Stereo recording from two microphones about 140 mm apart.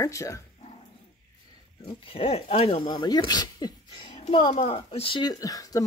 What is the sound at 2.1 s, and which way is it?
Speech, 45° left (ahead or behind).